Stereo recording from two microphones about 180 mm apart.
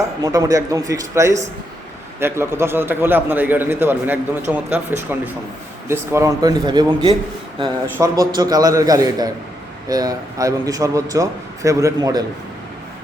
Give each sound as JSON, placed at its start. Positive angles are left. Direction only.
{"t": 0.2, "sound": "a man's voice", "side_deg": -20}